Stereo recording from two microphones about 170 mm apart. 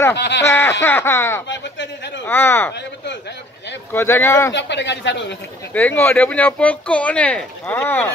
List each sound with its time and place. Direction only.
0.1 s a man's voice: 90° left
0.5 s speech: 15° left (ahead or behind)
1.5 s a sound: 90° left
2.2 s speech: 15° left (ahead or behind)
3.9 s speech: 15° left (ahead or behind)
4.6 s a man's voice: 90° left
5.7 s speech: 10° left (ahead or behind)